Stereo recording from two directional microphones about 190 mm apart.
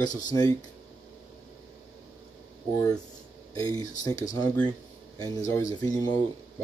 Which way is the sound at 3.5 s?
20° left (ahead or behind).